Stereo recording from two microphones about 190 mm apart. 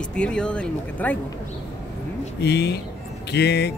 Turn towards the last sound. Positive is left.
turn(degrees=60)  # may be behind; listen again after turning